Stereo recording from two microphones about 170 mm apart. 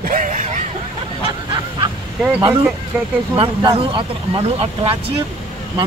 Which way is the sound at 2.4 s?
30° right (ahead or behind).